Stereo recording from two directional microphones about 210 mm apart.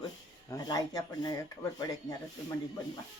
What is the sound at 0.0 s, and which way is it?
Speech, 15° left (ahead or behind).